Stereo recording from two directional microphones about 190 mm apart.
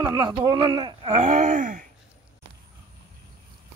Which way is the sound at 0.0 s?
20° right (ahead or behind).